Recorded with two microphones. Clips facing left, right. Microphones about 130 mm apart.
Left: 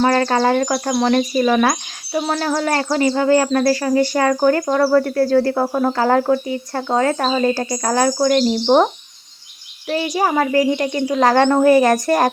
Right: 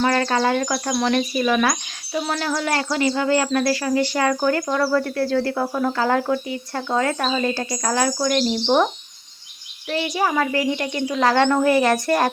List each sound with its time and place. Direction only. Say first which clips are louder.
0.0 s speech: left 4 dB; 35° left (ahead or behind)
10.2 s speech: left 5 dB; 40° left (ahead or behind)